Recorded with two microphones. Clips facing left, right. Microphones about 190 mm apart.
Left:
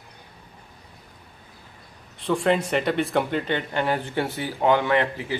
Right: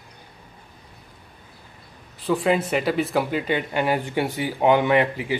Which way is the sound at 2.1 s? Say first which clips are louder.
Right 1 dB; 5° right (ahead or behind).